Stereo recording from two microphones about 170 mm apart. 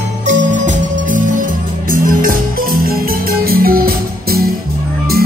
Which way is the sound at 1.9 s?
55° right (ahead or behind).